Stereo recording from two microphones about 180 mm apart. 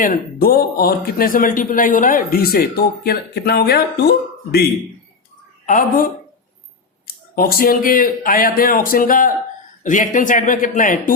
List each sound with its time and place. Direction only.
0.0 s a man's voice: 50° left (ahead or behind)
5.6 s a man's voice: 50° left (ahead or behind)
7.3 s a man's voice: 55° left (ahead or behind)